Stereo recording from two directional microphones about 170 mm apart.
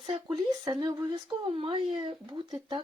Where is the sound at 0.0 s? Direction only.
35° right (ahead or behind).